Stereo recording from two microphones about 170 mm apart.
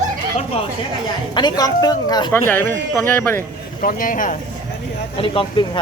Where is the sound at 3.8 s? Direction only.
55° left (ahead or behind).